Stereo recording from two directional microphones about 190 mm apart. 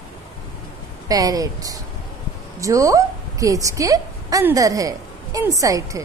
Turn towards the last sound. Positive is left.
turn(degrees=-15)  # may be behind; listen again after turning